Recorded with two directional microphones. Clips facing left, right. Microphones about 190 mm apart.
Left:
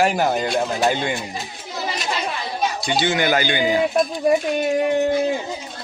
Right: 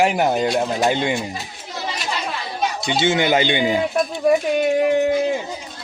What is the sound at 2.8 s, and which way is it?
Speech, 25° right (ahead or behind).